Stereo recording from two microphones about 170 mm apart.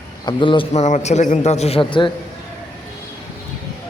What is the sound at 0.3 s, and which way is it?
A man's voice, 30° left (ahead or behind).